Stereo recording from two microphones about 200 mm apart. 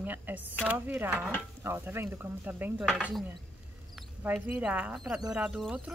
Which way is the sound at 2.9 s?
Centre (ahead or behind).